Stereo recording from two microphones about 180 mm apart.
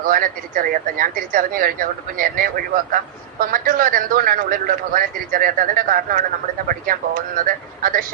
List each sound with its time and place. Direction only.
0.0 s a man's voice: 50° right (ahead or behind)